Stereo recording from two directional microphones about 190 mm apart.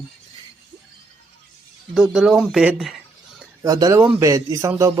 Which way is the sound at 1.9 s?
5° right (ahead or behind).